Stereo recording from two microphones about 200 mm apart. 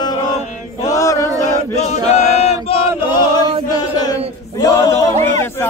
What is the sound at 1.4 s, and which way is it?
Chant, 35° left (ahead or behind).